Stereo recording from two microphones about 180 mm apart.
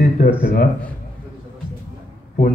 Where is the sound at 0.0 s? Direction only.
55° left (ahead or behind).